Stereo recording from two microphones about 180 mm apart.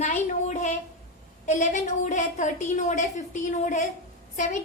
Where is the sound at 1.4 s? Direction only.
40° left (ahead or behind).